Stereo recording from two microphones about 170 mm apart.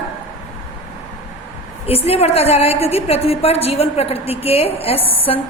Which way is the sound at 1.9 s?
35° left (ahead or behind).